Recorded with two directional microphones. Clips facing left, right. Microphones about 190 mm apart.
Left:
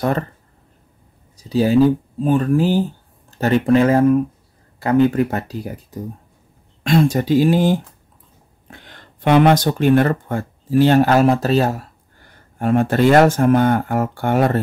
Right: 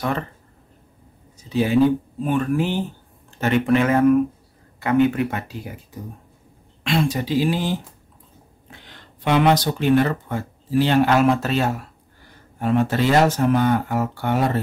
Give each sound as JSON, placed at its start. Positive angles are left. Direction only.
{"t": 1.3, "sound": "speech", "side_deg": 35}
{"t": 12.5, "sound": "speech", "side_deg": 50}